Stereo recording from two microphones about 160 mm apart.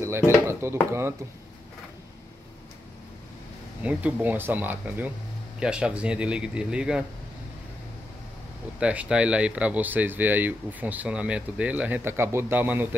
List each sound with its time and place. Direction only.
0.0 s dishes: 15° right (ahead or behind)
0.5 s speech: 15° right (ahead or behind)
3.8 s speech: 10° right (ahead or behind)
8.7 s speech: 5° right (ahead or behind)